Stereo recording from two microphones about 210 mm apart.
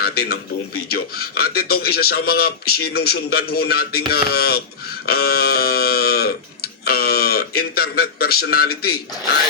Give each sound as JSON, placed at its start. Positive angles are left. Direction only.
{"t": 0.0, "sound": "a man's voice", "side_deg": 45}